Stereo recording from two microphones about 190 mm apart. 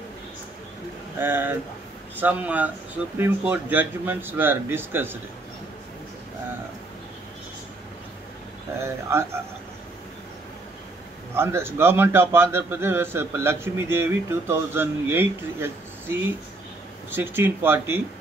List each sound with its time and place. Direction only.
1.2 s a man's voice: 10° right (ahead or behind)
8.8 s a man's voice: 15° right (ahead or behind)
11.3 s a man's voice: 15° right (ahead or behind)